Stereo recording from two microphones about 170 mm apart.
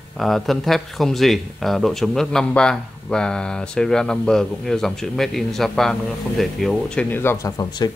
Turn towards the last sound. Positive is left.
turn(degrees=15)  # may be behind; listen again after turning